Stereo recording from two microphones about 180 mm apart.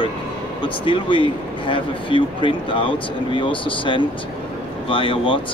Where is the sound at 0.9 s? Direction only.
30° left (ahead or behind).